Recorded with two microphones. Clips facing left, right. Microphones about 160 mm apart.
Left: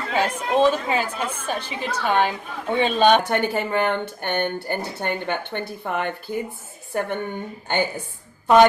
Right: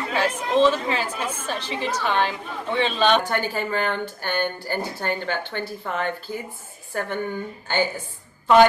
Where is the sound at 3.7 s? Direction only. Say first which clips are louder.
Left 3 dB; 20° left (ahead or behind).